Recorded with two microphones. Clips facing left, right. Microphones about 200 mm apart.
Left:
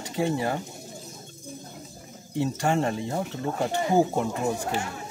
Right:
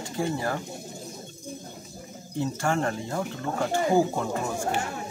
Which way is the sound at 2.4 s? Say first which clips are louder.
Left 2 dB; 20° left (ahead or behind).